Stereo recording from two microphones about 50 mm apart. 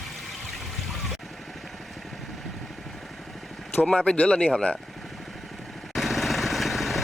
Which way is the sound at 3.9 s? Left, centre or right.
Left.